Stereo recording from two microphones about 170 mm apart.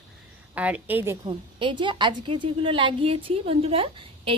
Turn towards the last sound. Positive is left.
turn(degrees=-30)  # may be behind; listen again after turning